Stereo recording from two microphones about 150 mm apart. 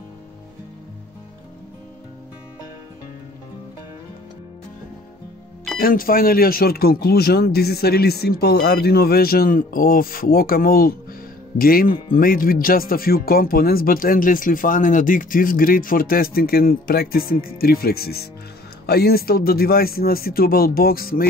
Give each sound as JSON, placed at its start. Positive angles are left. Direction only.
{"t": 5.8, "sound": "speech", "side_deg": 75}